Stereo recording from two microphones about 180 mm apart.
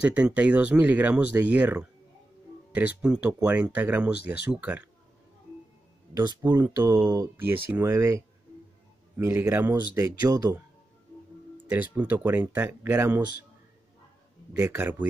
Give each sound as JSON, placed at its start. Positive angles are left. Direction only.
{"t": 0.0, "sound": "speech", "side_deg": -5}
{"t": 3.0, "sound": "speech", "side_deg": -10}
{"t": 6.1, "sound": "speech", "side_deg": -25}
{"t": 6.4, "sound": "speech", "side_deg": -10}
{"t": 11.7, "sound": "speech", "side_deg": -10}
{"t": 14.6, "sound": "speech", "side_deg": -10}